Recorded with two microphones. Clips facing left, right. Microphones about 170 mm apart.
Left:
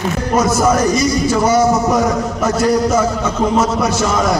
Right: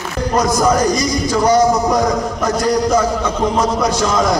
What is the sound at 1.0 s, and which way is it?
Music, 15° right (ahead or behind).